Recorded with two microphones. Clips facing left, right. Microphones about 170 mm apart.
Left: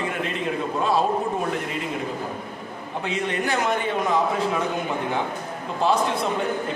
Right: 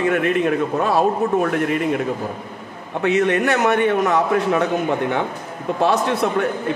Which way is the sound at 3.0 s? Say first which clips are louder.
Right 9 dB; 65° right (ahead or behind).